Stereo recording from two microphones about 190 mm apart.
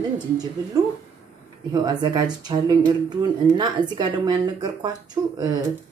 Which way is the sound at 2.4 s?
20° right (ahead or behind).